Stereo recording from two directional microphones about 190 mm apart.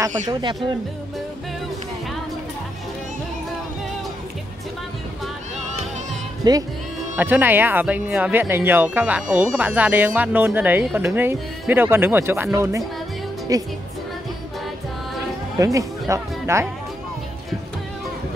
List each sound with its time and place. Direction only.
0.3 s speech: 25° right (ahead or behind)
6.4 s music: 20° right (ahead or behind)
7.2 s speech: 10° right (ahead or behind)
15.5 s speech: 15° right (ahead or behind)